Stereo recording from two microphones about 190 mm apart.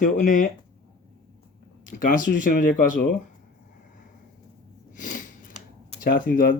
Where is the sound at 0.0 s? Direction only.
40° left (ahead or behind).